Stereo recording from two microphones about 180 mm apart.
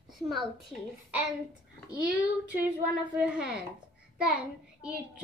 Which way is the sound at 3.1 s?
5° right (ahead or behind).